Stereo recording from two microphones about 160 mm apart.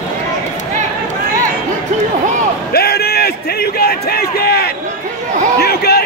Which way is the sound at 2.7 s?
80° left.